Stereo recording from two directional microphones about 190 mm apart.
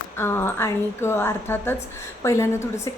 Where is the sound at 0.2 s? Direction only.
10° left (ahead or behind).